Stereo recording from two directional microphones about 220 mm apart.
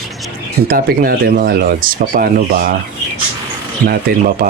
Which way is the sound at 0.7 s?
40° right (ahead or behind).